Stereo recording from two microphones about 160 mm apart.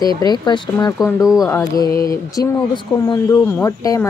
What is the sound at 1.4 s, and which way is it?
A woman's voice, 15° left (ahead or behind).